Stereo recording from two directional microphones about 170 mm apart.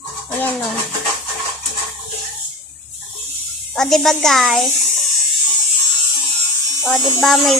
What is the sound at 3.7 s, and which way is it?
Speech, centre (ahead or behind).